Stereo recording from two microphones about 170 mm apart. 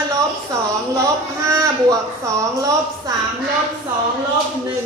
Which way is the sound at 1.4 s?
20° right (ahead or behind).